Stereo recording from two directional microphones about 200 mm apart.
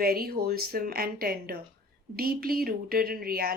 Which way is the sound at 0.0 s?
50° right (ahead or behind).